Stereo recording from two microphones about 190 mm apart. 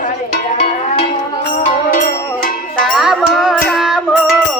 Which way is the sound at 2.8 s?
Centre (ahead or behind).